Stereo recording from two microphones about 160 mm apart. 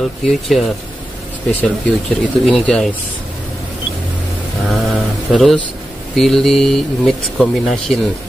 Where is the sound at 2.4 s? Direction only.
5° left (ahead or behind).